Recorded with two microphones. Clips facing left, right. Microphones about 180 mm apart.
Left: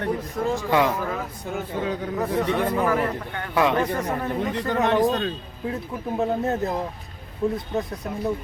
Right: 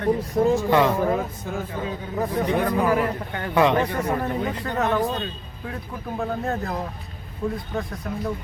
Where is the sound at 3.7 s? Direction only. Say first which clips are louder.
Right 1 dB; 10° right (ahead or behind).